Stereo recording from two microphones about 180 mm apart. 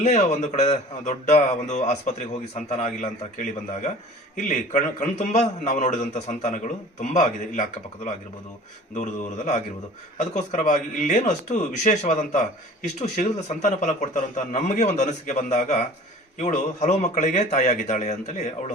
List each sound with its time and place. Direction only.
0.0 s a man's voice: 40° left (ahead or behind)